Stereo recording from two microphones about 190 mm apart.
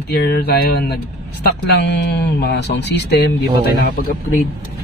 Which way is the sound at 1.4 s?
65° left (ahead or behind).